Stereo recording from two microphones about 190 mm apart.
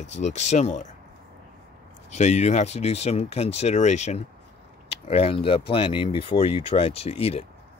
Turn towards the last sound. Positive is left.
turn(degrees=30)  # may be behind; listen again after turning